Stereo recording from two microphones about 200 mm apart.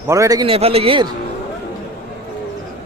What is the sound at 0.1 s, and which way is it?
Speech, 15° right (ahead or behind).